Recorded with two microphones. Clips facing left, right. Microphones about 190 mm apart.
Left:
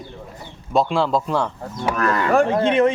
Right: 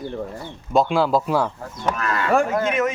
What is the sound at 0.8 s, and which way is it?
Speech, centre (ahead or behind).